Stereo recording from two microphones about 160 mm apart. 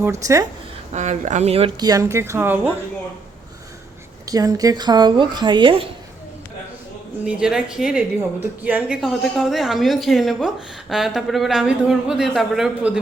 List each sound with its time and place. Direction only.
0.0 s a woman's voice: 20° right (ahead or behind)
0.9 s speech: 45° right (ahead or behind)
1.8 s speech: 20° right (ahead or behind)
4.3 s a woman's voice: 25° right (ahead or behind)
7.3 s a woman's voice: 5° right (ahead or behind)